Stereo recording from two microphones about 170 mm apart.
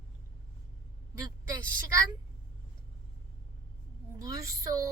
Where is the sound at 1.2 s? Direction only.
20° right (ahead or behind).